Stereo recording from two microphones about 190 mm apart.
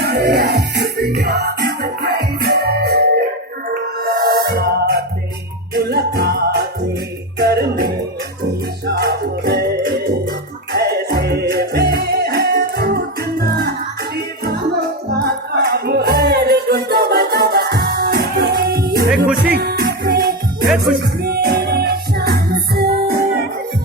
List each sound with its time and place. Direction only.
0.0 s music: 60° right (ahead or behind)
15.2 s music: 55° right (ahead or behind)
19.1 s music: 5° right (ahead or behind)
19.5 s music: 55° right (ahead or behind)